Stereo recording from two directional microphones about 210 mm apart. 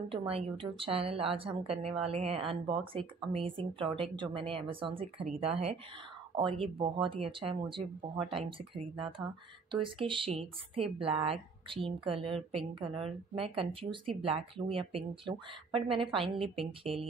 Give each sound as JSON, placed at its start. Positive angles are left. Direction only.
{"t": 0.1, "sound": "a woman's voice", "side_deg": -25}